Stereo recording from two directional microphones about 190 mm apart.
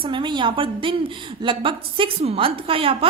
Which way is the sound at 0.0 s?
25° right (ahead or behind).